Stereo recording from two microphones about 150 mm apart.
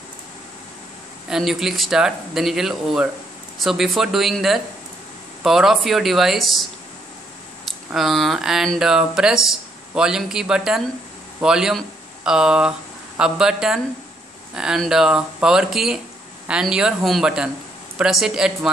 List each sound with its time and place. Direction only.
1.3 s speech: centre (ahead or behind)
7.9 s speech: centre (ahead or behind)